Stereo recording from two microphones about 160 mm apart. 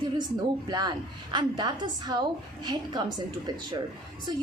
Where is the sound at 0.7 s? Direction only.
25° right (ahead or behind).